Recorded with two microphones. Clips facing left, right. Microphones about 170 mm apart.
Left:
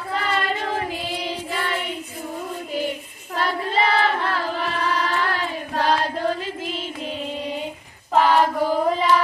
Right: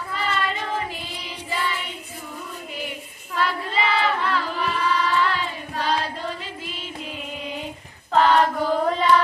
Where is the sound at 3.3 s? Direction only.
45° left (ahead or behind).